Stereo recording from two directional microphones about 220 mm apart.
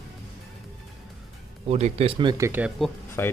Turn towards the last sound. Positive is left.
turn(degrees=10)  # may be behind; listen again after turning